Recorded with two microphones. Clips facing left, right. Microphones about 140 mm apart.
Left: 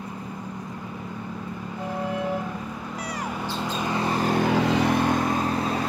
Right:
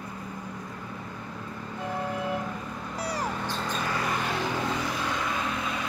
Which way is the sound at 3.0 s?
30° right (ahead or behind).